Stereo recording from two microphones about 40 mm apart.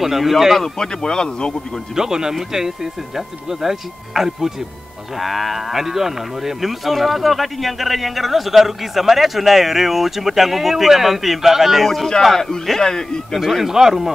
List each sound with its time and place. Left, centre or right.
0.0 s moo: centre
0.6 s a man's voice: centre
2.0 s speech: centre
5.2 s moo: centre
12.2 s a man's voice: centre
13.3 s speech: centre